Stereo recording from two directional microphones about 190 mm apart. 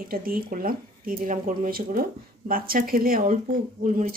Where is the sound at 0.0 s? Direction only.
50° right (ahead or behind).